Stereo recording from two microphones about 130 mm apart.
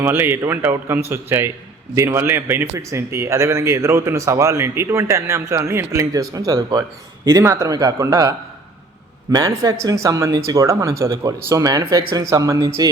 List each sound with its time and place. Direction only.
0.0 s a man's voice: 15° right (ahead or behind)
9.3 s a man's voice: 25° right (ahead or behind)